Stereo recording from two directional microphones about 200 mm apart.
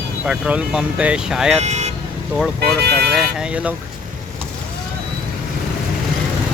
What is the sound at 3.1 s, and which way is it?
Speech, 5° right (ahead or behind).